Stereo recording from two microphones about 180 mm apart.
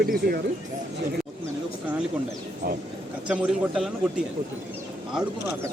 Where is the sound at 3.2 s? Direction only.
5° right (ahead or behind).